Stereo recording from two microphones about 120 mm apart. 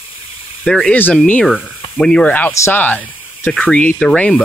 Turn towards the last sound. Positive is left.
turn(degrees=10)  # may be behind; listen again after turning